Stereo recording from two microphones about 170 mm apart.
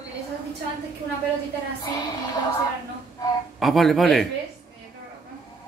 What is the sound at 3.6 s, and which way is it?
Speech, centre (ahead or behind).